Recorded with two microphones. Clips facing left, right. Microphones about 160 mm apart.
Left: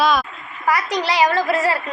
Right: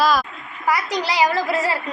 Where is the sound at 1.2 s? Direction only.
20° right (ahead or behind).